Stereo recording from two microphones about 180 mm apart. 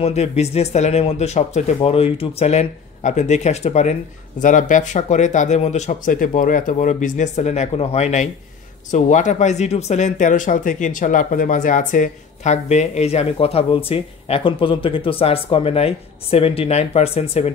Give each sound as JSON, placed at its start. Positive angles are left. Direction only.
{"t": 0.0, "sound": "speech", "side_deg": 40}